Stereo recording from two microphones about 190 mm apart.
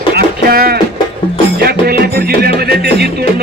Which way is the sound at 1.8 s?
55° right (ahead or behind).